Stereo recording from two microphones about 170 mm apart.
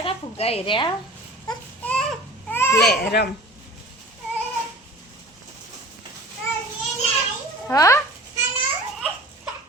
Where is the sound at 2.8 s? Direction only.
70° left (ahead or behind).